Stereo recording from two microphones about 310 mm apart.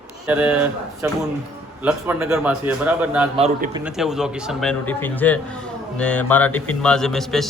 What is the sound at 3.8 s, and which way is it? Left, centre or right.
A man's voice, centre.